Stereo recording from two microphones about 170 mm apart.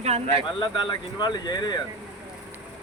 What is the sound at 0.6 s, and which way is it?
Speech, 25° left (ahead or behind).